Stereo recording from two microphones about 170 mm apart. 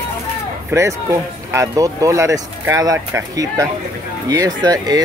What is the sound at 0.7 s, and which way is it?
Speech, 15° right (ahead or behind).